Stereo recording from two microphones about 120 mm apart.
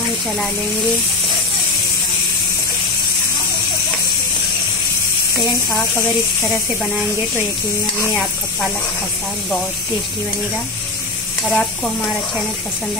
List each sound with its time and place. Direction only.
11.4 s stir: centre (ahead or behind)